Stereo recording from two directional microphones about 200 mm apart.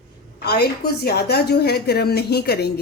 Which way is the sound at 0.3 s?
50° left (ahead or behind).